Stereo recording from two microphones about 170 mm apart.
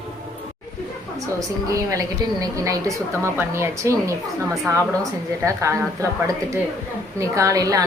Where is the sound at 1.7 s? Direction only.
20° right (ahead or behind).